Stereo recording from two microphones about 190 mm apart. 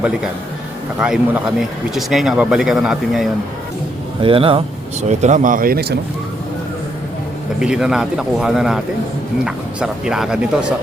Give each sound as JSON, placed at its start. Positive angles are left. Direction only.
{"t": 0.9, "sound": "speech", "side_deg": -5}
{"t": 4.2, "sound": "speech", "side_deg": -30}
{"t": 7.6, "sound": "speech", "side_deg": -5}